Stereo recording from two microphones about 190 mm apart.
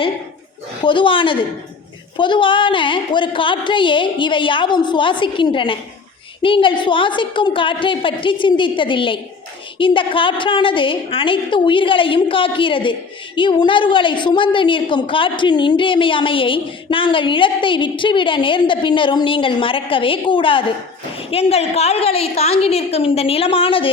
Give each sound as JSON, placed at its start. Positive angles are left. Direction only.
{"t": 0.8, "sound": "a woman's voice", "side_deg": 25}